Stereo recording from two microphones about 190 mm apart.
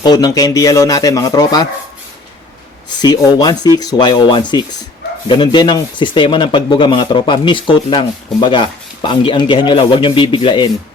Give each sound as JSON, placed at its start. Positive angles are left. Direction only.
{"t": 0.0, "sound": "speech", "side_deg": 20}
{"t": 3.0, "sound": "speech", "side_deg": 20}